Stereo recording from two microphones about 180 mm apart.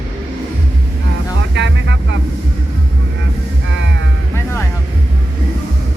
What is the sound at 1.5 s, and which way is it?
Vehicle, 85° right.